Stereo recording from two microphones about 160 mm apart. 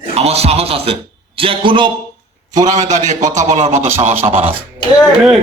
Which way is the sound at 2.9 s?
45° right (ahead or behind).